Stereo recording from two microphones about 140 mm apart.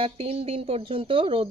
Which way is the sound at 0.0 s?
45° right (ahead or behind).